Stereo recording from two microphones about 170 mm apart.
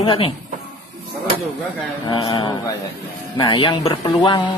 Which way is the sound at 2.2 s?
20° left (ahead or behind).